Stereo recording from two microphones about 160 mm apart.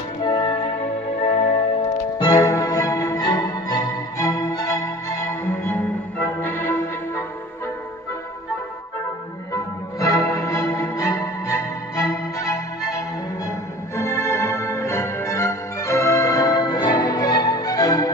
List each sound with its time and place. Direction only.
0.2 s music: 30° left (ahead or behind)
2.1 s music: 25° left (ahead or behind)
9.5 s music: 20° left (ahead or behind)